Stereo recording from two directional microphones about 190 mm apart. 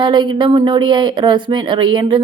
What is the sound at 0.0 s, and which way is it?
Speech, 25° right (ahead or behind).